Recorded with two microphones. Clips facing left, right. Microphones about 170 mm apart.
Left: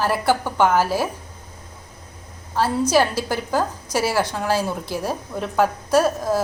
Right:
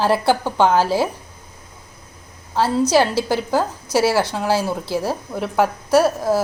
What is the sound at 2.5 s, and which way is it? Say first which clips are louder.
A woman's voice: right 2 dB; 10° right (ahead or behind).